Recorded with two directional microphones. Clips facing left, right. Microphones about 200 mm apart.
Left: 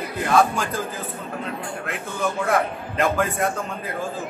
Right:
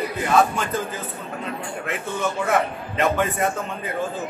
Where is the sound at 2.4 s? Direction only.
Centre (ahead or behind).